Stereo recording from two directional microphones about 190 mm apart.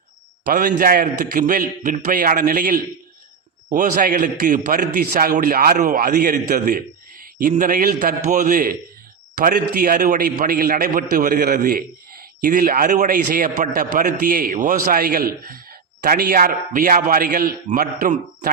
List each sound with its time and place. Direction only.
0.4 s a man's voice: 45° right (ahead or behind)